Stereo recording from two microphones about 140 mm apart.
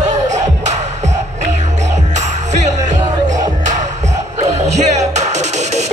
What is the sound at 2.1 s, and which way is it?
Music, 55° right (ahead or behind).